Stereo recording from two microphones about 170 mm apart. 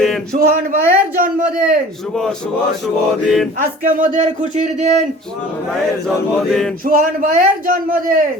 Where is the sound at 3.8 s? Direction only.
50° right (ahead or behind).